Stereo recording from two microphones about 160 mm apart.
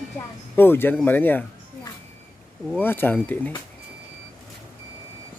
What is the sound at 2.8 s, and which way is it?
Speech, 15° left (ahead or behind).